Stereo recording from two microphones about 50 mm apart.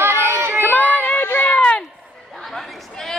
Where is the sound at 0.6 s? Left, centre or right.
Left.